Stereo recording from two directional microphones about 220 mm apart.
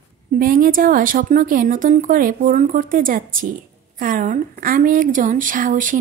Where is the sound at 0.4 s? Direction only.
40° right (ahead or behind).